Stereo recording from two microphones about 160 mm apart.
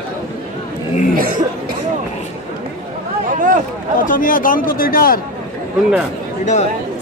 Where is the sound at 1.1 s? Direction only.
60° right (ahead or behind).